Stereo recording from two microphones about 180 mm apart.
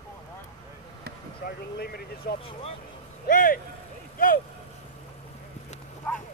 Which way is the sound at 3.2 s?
50° left (ahead or behind).